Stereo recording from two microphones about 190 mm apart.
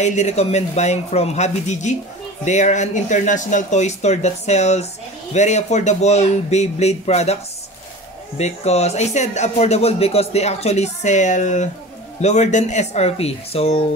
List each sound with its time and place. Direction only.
0.0 s speech: 35° left (ahead or behind)
8.4 s speech: 35° left (ahead or behind)